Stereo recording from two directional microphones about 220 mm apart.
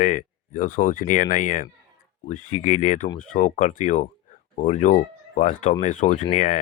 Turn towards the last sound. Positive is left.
turn(degrees=35)  # may be behind; listen again after turning